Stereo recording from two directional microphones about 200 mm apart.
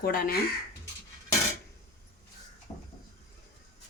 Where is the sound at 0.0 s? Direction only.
50° left (ahead or behind).